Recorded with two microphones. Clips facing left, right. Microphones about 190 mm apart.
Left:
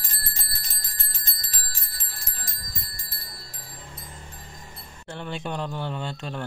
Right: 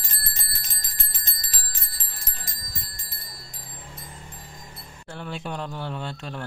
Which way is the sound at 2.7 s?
20° right (ahead or behind).